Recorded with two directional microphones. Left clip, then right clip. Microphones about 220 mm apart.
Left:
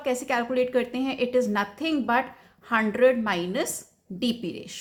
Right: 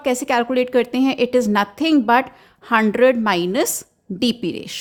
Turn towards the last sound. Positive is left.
turn(degrees=-45)  # may be behind; listen again after turning